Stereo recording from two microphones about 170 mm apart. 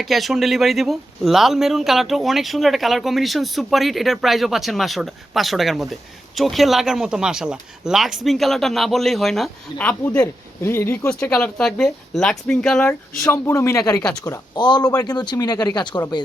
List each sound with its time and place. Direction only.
0.0 s speech: centre (ahead or behind); by 16.2 s 25° left (ahead or behind)